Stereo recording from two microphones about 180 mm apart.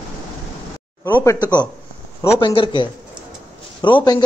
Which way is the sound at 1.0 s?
15° left (ahead or behind).